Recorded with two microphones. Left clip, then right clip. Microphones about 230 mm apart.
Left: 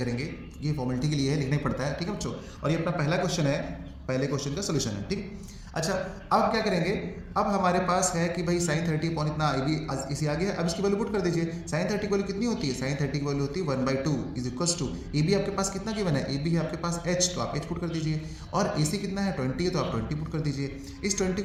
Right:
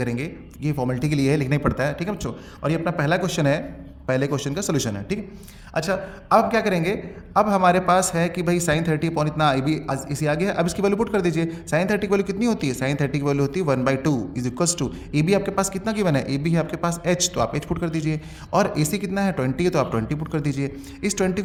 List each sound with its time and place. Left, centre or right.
0.0 s speech: right
1.5 s a man's voice: right
5.7 s a man's voice: right